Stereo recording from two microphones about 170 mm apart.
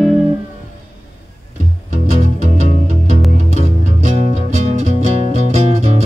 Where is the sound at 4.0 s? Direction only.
45° right (ahead or behind).